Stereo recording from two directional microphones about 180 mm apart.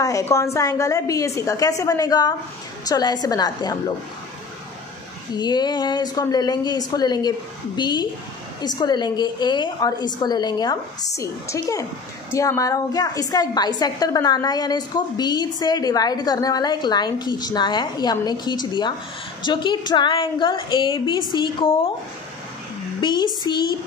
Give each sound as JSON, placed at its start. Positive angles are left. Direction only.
{"t": 0.0, "sound": "a woman's voice", "side_deg": 15}
{"t": 5.3, "sound": "a woman's voice", "side_deg": 25}
{"t": 22.9, "sound": "speech", "side_deg": 25}